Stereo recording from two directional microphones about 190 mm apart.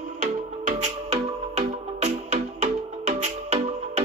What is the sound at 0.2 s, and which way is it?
Music, 40° right (ahead or behind).